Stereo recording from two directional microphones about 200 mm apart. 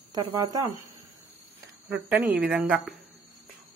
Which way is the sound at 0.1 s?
15° right (ahead or behind).